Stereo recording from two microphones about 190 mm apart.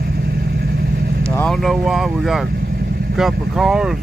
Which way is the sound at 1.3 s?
5° left (ahead or behind).